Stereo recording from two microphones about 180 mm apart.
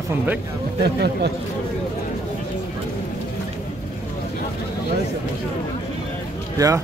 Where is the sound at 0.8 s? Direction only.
65° right (ahead or behind).